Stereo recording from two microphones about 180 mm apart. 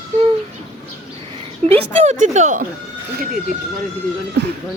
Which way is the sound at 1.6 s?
40° right (ahead or behind).